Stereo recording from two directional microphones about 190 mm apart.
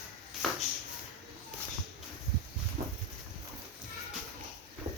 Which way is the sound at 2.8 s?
40° right (ahead or behind).